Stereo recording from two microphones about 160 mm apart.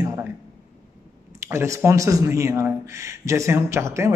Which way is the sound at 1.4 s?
15° right (ahead or behind).